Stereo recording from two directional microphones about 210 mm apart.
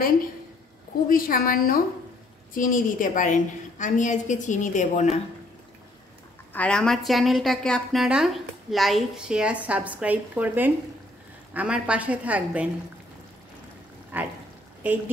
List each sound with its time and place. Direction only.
1.0 s a woman's voice: 40° left (ahead or behind)
6.5 s a woman's voice: 5° left (ahead or behind)
14.1 s a woman's voice: 10° right (ahead or behind)